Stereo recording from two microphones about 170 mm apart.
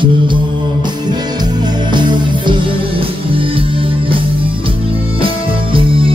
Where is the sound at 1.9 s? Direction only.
25° right (ahead or behind).